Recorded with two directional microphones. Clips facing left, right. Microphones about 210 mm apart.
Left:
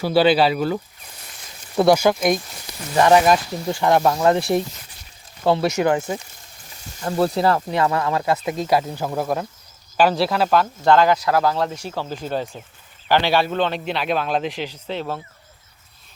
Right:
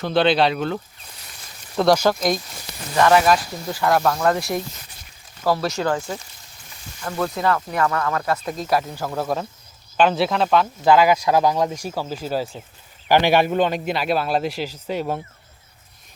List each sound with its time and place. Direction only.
0.0 s speech: 5° left (ahead or behind)
1.8 s speech: 10° left (ahead or behind)
2.9 s speech: 20° left (ahead or behind)
7.0 s speech: 30° left (ahead or behind); by 9.2 s 15° left (ahead or behind)
9.2 s speech: centre (ahead or behind)